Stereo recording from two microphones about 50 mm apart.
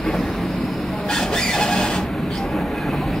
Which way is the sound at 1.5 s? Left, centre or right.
Centre.